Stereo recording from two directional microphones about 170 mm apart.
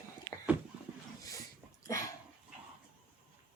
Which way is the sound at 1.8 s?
20° left (ahead or behind).